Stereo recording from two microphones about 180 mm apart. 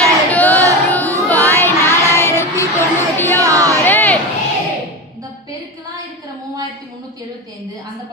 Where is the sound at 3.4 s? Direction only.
20° right (ahead or behind).